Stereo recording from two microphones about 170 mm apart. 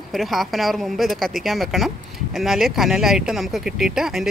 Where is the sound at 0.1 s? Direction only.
Centre (ahead or behind).